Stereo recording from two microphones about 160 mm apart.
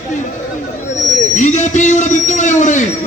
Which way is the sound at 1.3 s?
50° left (ahead or behind).